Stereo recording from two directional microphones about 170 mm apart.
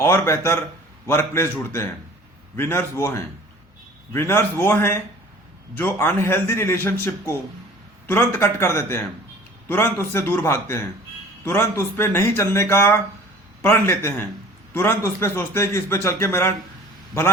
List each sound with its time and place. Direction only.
0.0 s a man's voice: 15° left (ahead or behind)